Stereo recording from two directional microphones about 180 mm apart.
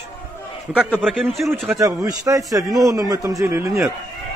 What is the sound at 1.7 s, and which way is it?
A man's voice, 20° right (ahead or behind).